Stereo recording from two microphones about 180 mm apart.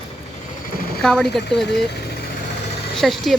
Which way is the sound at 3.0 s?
Centre (ahead or behind).